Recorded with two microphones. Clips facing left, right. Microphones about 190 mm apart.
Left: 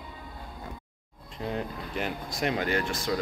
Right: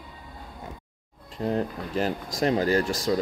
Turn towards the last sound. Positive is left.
turn(degrees=-35)  # may be behind; listen again after turning